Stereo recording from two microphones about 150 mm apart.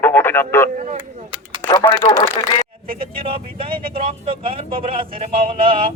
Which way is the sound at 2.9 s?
35° right (ahead or behind).